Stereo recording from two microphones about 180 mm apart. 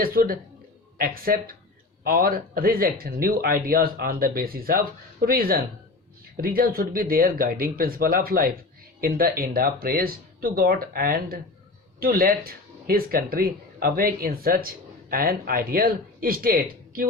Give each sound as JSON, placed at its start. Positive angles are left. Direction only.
{"t": 0.0, "sound": "speech", "side_deg": -55}